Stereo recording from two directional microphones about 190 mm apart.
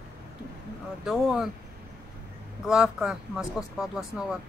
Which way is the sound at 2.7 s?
5° right (ahead or behind).